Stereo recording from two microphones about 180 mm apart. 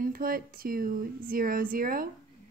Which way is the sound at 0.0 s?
55° right (ahead or behind).